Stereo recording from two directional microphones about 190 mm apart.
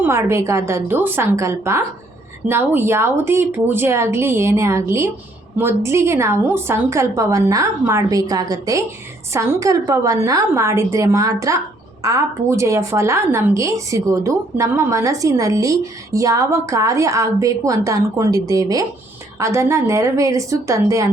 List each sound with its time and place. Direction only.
0.0 s a woman's voice: 15° right (ahead or behind)